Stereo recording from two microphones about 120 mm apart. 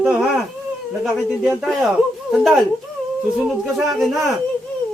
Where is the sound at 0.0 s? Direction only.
5° right (ahead or behind).